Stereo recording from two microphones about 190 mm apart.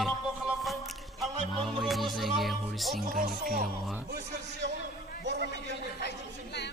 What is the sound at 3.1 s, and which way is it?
Speech, 50° right (ahead or behind).